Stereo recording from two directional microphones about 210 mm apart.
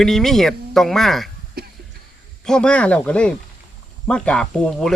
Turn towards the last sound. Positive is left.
turn(degrees=5)  # may be behind; listen again after turning